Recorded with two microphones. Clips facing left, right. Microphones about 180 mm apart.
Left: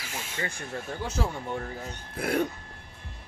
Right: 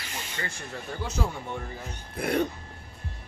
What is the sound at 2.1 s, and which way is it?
Speech, 5° left (ahead or behind).